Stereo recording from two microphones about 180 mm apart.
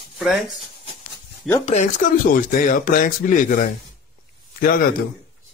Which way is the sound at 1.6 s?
40° left (ahead or behind).